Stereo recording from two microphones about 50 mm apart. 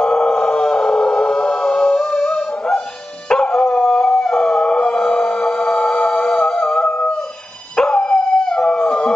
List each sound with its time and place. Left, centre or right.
0.0 s music: centre
3.3 s howl: centre
7.7 s dog: centre